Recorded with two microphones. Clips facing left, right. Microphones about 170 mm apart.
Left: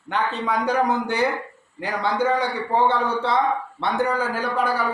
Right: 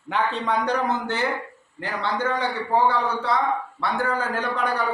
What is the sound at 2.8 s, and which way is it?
A man's voice, 25° left (ahead or behind).